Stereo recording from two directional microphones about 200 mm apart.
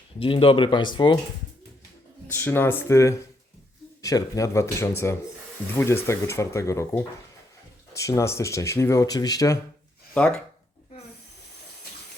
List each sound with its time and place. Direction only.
0.2 s speech: 25° left (ahead or behind)
2.2 s speech: 10° left (ahead or behind)
10.2 s speech: 5° left (ahead or behind)